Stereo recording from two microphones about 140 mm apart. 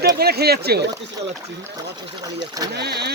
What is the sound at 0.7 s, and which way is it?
Speech, 90° right.